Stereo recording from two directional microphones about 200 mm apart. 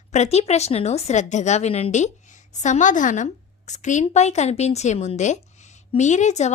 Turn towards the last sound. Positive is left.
turn(degrees=35)  # may be behind; listen again after turning